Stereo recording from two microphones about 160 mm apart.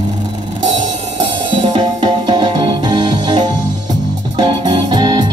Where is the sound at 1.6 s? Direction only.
30° right (ahead or behind).